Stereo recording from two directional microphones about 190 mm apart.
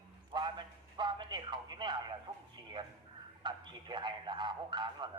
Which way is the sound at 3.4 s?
25° right (ahead or behind).